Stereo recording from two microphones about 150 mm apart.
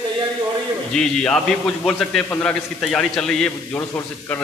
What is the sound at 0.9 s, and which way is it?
A man's voice, 5° left (ahead or behind).